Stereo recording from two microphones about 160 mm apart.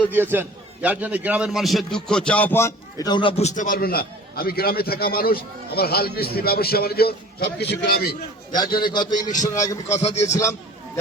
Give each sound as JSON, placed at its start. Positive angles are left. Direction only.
{"t": 0.1, "sound": "a man's voice", "side_deg": -15}
{"t": 8.5, "sound": "a man's voice", "side_deg": 25}
{"t": 9.2, "sound": "a man's voice", "side_deg": 50}